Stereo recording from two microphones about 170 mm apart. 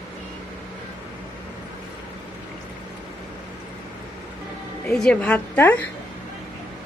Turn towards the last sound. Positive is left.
turn(degrees=10)  # may be behind; listen again after turning